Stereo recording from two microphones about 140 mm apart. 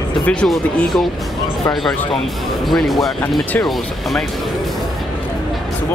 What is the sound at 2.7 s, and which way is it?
Speech, centre (ahead or behind).